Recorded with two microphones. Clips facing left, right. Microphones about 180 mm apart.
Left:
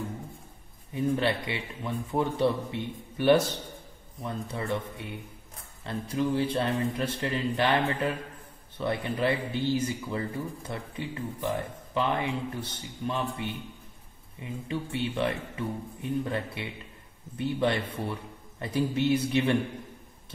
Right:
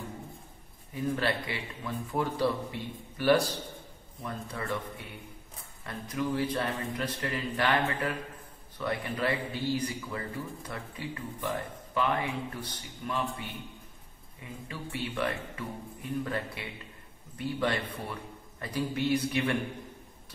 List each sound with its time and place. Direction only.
0.9 s speech: 20° left (ahead or behind)
5.9 s speech: 30° left (ahead or behind)
14.7 s speech: 25° left (ahead or behind)